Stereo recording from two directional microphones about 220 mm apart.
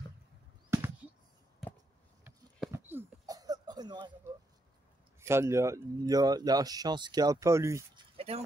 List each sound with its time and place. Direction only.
0.7 s bird flight: 10° right (ahead or behind)
2.2 s a sound: 10° right (ahead or behind)
5.2 s speech: 10° right (ahead or behind)